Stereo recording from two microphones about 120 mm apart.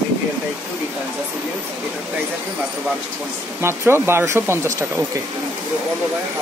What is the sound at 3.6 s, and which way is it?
Speech, 20° right (ahead or behind).